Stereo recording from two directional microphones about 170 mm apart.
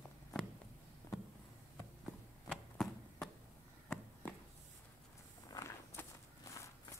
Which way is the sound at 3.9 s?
10° left (ahead or behind).